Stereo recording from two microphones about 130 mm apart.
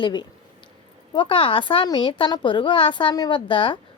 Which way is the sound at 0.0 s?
35° left (ahead or behind).